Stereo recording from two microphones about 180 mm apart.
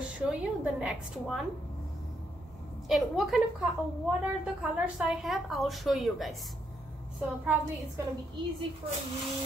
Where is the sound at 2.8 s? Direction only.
Centre (ahead or behind).